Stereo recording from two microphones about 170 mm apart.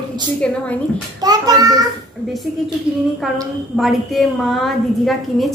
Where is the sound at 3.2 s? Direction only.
Centre (ahead or behind).